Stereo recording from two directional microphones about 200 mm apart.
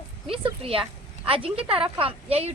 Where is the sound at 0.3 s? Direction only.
25° right (ahead or behind).